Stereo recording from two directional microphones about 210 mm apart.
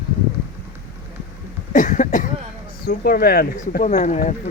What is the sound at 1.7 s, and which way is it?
Cough, 35° left (ahead or behind).